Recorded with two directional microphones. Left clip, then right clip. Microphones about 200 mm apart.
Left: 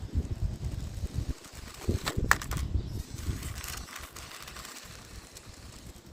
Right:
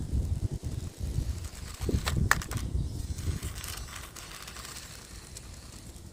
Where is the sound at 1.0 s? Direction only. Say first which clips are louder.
Left 1 dB; centre (ahead or behind).